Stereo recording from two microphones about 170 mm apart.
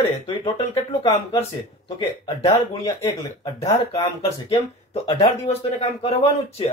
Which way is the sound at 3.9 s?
35° left (ahead or behind).